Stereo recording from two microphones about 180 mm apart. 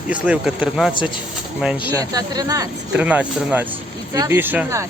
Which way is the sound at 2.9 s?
5° right (ahead or behind).